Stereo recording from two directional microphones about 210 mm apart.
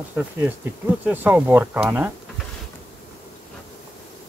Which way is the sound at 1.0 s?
10° right (ahead or behind).